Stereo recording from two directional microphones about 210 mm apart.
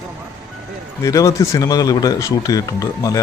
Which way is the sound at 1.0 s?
15° left (ahead or behind).